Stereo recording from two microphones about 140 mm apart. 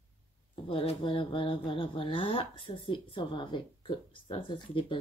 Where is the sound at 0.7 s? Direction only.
40° left (ahead or behind).